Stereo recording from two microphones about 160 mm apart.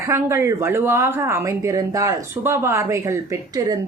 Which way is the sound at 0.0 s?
20° right (ahead or behind).